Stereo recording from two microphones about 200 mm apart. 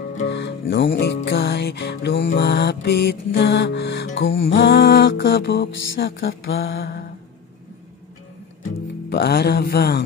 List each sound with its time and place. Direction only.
0.2 s music: 60° left (ahead or behind)
4.6 s music: 50° left (ahead or behind)
9.1 s music: 50° left (ahead or behind)